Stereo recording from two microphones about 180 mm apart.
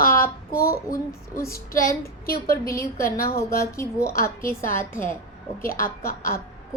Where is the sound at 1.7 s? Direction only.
50° left (ahead or behind).